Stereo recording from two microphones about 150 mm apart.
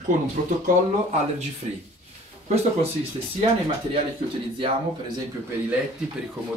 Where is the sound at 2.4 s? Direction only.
45° right (ahead or behind).